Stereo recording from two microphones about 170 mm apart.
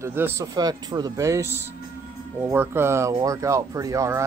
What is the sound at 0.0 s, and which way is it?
Speech, 15° right (ahead or behind).